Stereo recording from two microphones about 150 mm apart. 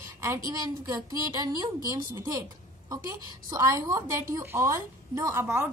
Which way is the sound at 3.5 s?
20° right (ahead or behind).